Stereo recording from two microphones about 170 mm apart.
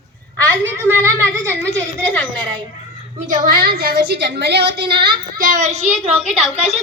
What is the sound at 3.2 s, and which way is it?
A woman's voice, 55° right (ahead or behind).